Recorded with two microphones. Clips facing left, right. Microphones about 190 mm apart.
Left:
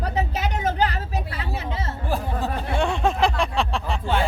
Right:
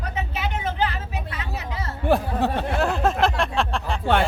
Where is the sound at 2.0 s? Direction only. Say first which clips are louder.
Right 7 dB; 65° right (ahead or behind).